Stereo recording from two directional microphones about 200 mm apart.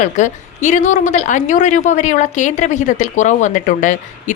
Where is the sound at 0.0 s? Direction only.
35° left (ahead or behind).